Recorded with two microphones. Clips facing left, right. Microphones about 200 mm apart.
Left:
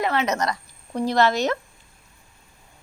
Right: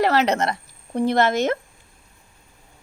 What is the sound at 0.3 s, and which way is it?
Speech, 25° right (ahead or behind).